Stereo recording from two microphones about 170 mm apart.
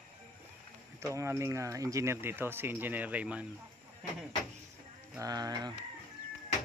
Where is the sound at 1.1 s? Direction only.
15° right (ahead or behind).